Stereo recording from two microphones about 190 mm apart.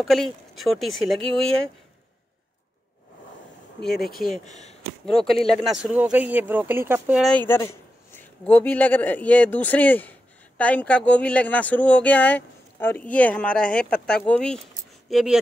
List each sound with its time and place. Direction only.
0.0 s speech: centre (ahead or behind)
3.8 s speech: 55° left (ahead or behind)
4.3 s speech: 40° left (ahead or behind)
5.0 s speech: centre (ahead or behind)
7.2 s speech: 5° left (ahead or behind)